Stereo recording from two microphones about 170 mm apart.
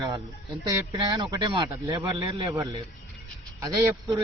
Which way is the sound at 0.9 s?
30° right (ahead or behind).